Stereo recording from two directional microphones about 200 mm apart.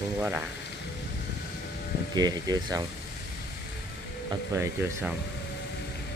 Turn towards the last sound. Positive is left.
turn(degrees=-10)  # may be behind; listen again after turning